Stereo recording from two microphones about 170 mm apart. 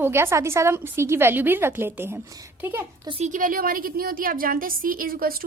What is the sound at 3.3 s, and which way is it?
A woman's voice, 50° right (ahead or behind).